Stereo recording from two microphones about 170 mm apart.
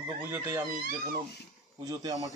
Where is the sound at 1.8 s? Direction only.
20° right (ahead or behind).